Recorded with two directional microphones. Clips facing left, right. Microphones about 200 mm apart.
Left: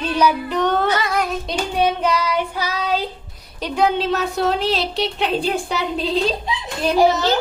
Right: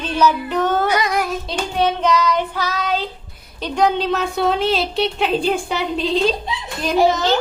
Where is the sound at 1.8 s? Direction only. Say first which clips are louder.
Right 2 dB; 10° left (ahead or behind).